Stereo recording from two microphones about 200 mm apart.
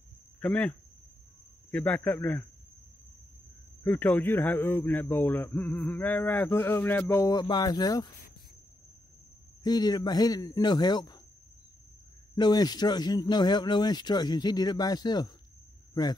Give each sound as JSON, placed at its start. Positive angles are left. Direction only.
{"t": 0.4, "sound": "a man's voice", "side_deg": 5}
{"t": 3.8, "sound": "a man's voice", "side_deg": 10}
{"t": 9.6, "sound": "speech", "side_deg": 20}
{"t": 12.4, "sound": "speech", "side_deg": 20}